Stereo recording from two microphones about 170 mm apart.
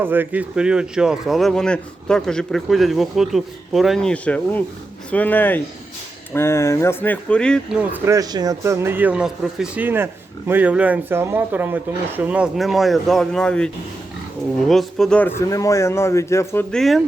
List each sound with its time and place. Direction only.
0.0 s speech: 10° right (ahead or behind); by 7.8 s 5° left (ahead or behind)
7.8 s speech: 15° right (ahead or behind); by 13.7 s 5° left (ahead or behind)
14.7 s speech: centre (ahead or behind)
15.4 s speech: 20° left (ahead or behind)
16.7 s speech: centre (ahead or behind)